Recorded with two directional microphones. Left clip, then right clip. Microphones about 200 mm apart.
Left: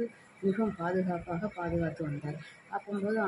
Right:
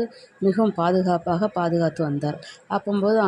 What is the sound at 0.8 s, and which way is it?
Speech, 45° right (ahead or behind).